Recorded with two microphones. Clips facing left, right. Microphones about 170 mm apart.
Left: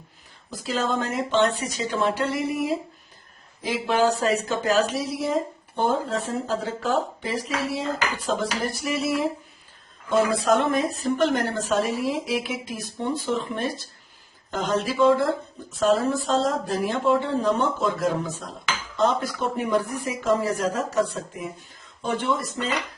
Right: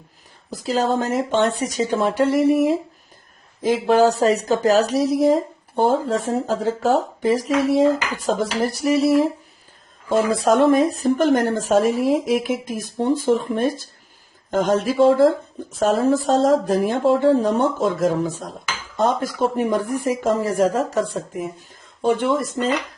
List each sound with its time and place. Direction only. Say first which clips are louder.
0.6 s a woman's voice: right 5 dB; 40° right (ahead or behind)
3.6 s a woman's voice: right 6 dB; 40° right (ahead or behind)
10.1 s a woman's voice: right 3 dB; 50° right (ahead or behind)
22.0 s a woman's voice: right 7 dB; 50° right (ahead or behind)